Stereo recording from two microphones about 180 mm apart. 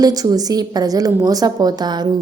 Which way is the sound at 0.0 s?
20° right (ahead or behind).